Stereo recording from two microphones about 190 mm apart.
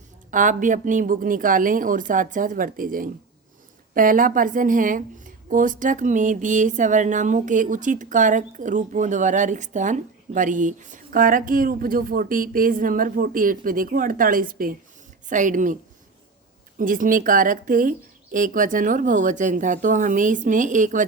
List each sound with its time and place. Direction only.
0.3 s speech: 45° right (ahead or behind)